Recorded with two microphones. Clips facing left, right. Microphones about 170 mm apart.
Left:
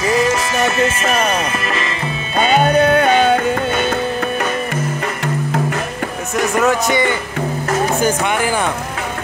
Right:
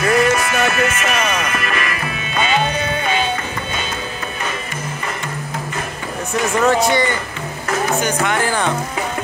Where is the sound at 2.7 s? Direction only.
60° left (ahead or behind).